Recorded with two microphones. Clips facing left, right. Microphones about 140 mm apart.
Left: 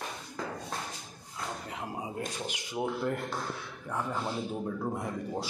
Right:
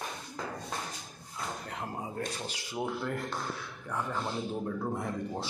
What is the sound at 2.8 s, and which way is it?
Speech, 5° left (ahead or behind).